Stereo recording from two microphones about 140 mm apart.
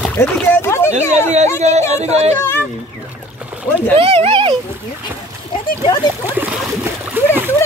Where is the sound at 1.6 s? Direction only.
55° right (ahead or behind).